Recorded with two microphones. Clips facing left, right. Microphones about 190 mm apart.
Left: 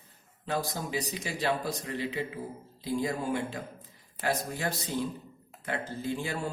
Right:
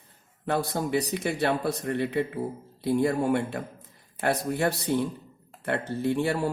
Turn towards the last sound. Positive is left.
turn(degrees=-65)  # may be behind; listen again after turning